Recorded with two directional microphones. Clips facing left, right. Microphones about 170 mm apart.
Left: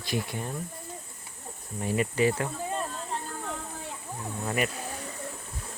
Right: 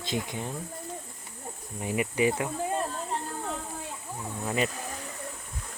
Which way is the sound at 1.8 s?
15° right (ahead or behind).